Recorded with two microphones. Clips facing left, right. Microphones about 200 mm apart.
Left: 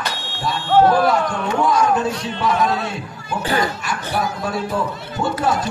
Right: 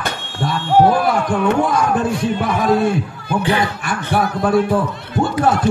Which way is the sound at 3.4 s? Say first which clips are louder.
Right 2 dB; 40° left (ahead or behind).